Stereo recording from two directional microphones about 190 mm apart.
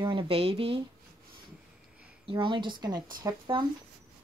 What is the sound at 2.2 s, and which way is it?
Speech, 25° right (ahead or behind).